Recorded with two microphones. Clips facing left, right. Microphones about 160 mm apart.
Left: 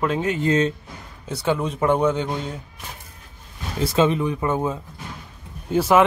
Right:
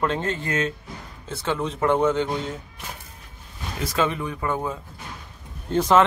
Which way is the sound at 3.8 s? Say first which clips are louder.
Left 5 dB; 25° left (ahead or behind).